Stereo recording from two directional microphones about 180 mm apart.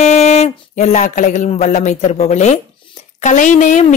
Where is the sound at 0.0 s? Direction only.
40° left (ahead or behind).